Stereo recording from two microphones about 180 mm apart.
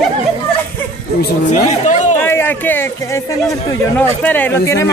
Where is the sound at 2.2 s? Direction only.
10° left (ahead or behind).